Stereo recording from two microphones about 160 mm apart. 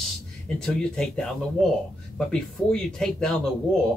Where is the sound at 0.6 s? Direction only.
5° left (ahead or behind).